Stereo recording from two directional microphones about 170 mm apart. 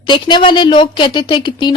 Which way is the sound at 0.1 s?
25° left (ahead or behind).